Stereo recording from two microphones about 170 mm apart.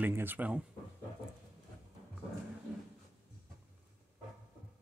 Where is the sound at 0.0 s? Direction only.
10° right (ahead or behind).